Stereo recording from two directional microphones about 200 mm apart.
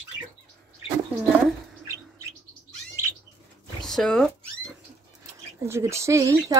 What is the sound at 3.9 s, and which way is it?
Speech, 5° left (ahead or behind).